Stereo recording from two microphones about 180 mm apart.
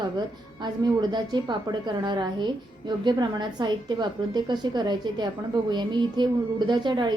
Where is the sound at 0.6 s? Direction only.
25° right (ahead or behind).